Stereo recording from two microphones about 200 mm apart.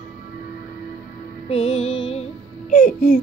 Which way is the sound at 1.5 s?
30° left (ahead or behind).